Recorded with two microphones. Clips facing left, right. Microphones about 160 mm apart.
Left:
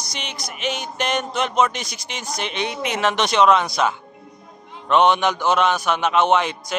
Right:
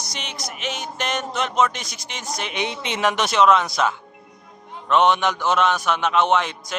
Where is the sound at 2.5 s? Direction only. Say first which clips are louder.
Even; 15° right (ahead or behind).